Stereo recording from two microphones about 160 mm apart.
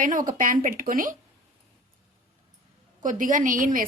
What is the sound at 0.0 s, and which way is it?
Speech, 55° right (ahead or behind).